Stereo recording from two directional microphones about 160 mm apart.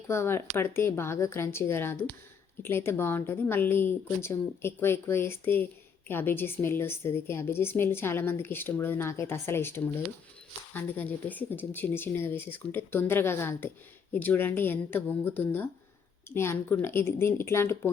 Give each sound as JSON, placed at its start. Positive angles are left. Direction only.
{"t": 0.1, "sound": "a woman's voice", "side_deg": 15}